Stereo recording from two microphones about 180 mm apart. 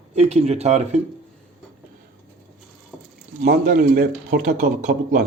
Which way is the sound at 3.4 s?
55° right (ahead or behind).